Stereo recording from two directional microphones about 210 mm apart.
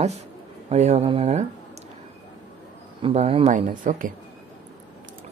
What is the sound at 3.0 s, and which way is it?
Speech, 30° right (ahead or behind).